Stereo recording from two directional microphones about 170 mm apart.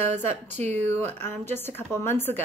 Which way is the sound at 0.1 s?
40° right (ahead or behind).